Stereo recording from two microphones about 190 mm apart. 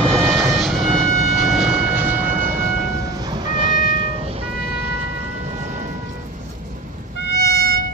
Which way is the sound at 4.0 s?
30° right (ahead or behind).